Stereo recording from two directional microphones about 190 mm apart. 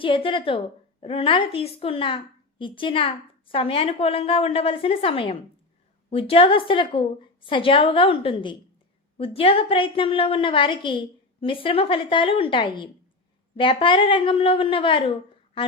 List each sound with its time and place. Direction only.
0.0 s a woman's voice: 25° left (ahead or behind)